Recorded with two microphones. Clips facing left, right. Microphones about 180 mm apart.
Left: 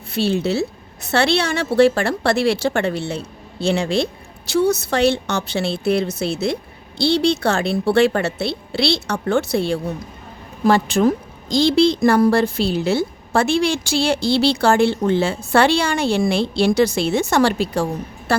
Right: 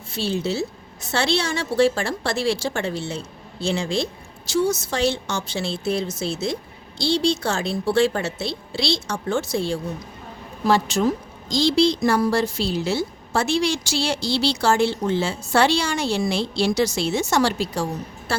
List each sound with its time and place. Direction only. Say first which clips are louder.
0.1 s a woman's voice: left 5 dB; 60° left (ahead or behind)